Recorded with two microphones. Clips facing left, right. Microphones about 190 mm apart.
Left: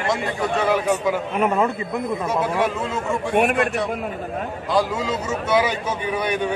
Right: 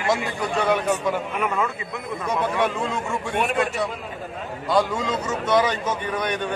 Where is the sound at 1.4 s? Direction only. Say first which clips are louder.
Left 8 dB; 35° left (ahead or behind).